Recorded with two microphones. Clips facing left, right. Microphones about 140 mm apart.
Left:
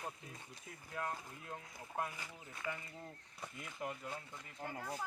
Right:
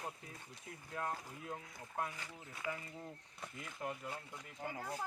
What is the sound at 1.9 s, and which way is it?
Speech, 10° left (ahead or behind).